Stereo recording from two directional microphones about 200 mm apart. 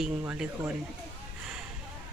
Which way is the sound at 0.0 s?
5° right (ahead or behind).